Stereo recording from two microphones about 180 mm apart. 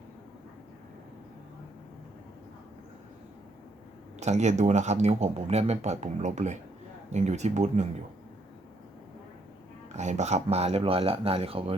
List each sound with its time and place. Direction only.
4.2 s speech: 40° right (ahead or behind)
9.9 s speech: 40° right (ahead or behind)